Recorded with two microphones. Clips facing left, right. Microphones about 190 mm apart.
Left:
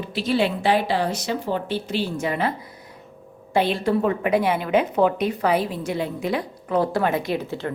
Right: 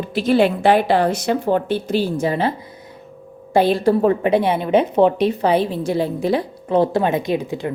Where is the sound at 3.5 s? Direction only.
40° right (ahead or behind).